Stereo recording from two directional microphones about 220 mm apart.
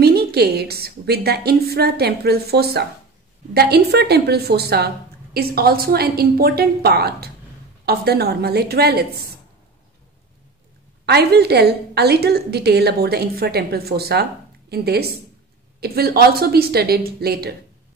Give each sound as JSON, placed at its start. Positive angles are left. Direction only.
{"t": 0.0, "sound": "a woman's voice", "side_deg": -45}
{"t": 11.1, "sound": "a woman's voice", "side_deg": -45}